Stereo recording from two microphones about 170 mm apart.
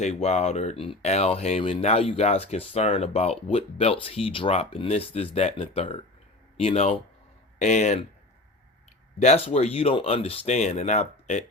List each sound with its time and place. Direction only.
0.0 s speech: 40° left (ahead or behind)
9.1 s speech: 40° left (ahead or behind)